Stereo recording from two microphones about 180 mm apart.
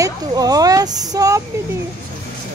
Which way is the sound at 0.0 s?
20° right (ahead or behind).